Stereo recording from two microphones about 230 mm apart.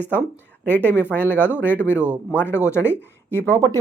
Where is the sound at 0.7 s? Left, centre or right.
Centre.